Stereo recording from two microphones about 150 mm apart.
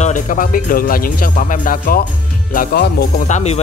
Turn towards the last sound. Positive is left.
turn(degrees=55)  # may be behind; listen again after turning